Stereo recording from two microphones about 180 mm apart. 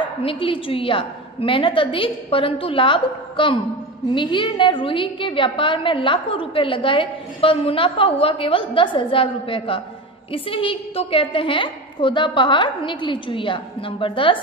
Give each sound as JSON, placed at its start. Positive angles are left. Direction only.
{"t": 0.2, "sound": "a woman's voice", "side_deg": 30}